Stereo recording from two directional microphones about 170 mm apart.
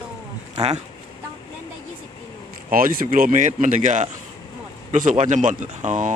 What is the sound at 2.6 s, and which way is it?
Speech, 55° right (ahead or behind).